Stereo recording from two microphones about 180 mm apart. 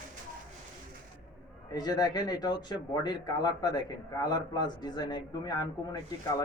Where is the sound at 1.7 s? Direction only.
20° left (ahead or behind).